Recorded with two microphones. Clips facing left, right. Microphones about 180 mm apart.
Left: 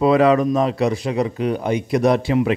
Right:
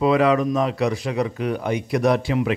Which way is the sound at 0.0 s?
35° left (ahead or behind).